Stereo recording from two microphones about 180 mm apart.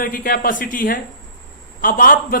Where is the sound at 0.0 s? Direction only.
55° left (ahead or behind).